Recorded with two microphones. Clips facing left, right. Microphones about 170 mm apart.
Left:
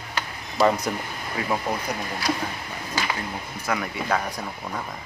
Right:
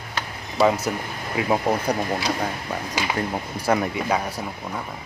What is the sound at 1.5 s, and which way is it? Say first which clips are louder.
Speech: right 6 dB; 25° right (ahead or behind).